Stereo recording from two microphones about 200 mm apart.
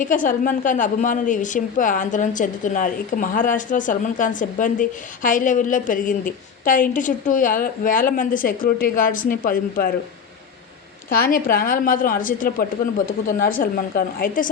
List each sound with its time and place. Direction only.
0.0 s a woman's voice: 40° left (ahead or behind)
11.2 s a woman's voice: 45° left (ahead or behind)